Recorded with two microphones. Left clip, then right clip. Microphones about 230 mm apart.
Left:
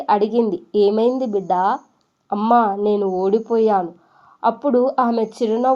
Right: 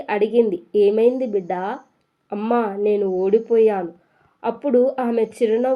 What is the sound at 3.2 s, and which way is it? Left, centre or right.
Speech, centre.